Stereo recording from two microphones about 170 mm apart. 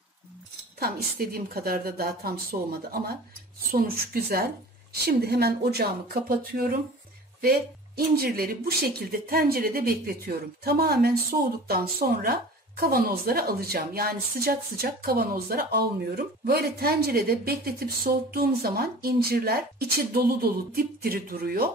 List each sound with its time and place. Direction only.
0.7 s speech: 65° right (ahead or behind)